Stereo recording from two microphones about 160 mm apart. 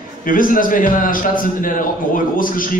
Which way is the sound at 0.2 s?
60° left (ahead or behind).